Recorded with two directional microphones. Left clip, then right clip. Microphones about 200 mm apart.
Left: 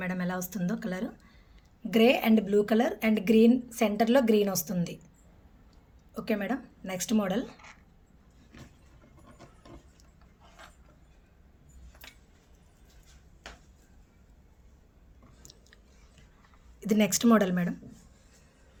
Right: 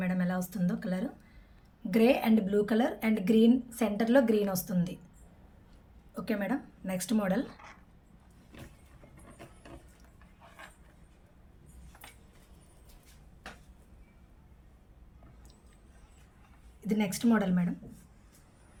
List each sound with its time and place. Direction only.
0.0 s speech: 30° left (ahead or behind)
6.1 s a woman's voice: 30° left (ahead or behind)
16.8 s speech: 45° left (ahead or behind)